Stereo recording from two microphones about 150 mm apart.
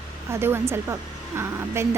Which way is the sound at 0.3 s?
15° right (ahead or behind).